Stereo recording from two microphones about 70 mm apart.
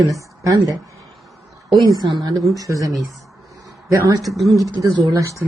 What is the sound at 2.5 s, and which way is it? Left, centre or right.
Speech, right.